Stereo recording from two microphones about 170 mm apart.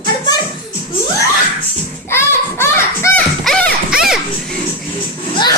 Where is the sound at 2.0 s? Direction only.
15° left (ahead or behind).